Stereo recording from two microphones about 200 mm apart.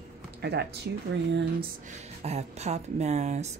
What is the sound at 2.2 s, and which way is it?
Speech, 35° right (ahead or behind).